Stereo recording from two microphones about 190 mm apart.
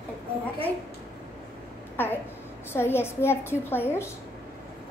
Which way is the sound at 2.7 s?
10° left (ahead or behind).